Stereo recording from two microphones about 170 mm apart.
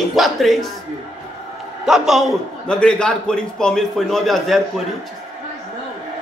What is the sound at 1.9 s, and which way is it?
A man's voice, centre (ahead or behind).